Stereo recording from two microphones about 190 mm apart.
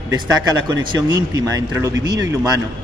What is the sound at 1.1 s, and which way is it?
Speech, 20° right (ahead or behind).